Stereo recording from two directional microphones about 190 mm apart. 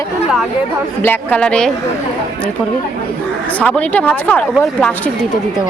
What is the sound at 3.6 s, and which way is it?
Speech, 5° left (ahead or behind).